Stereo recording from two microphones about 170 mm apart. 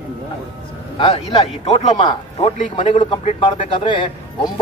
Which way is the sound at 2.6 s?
45° left (ahead or behind).